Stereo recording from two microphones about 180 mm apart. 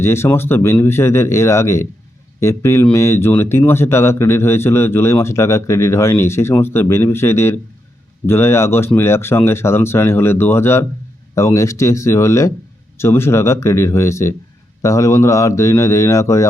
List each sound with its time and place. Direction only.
0.0 s speech: 15° left (ahead or behind)